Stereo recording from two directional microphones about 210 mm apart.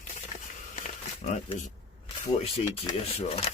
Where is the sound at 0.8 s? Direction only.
35° left (ahead or behind).